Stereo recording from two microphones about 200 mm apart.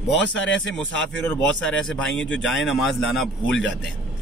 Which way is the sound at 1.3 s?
5° left (ahead or behind).